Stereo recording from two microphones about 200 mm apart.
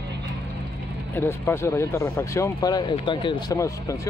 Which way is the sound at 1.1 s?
10° left (ahead or behind).